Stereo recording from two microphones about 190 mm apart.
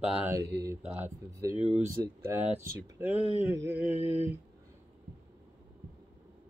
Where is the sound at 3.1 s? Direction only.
30° left (ahead or behind).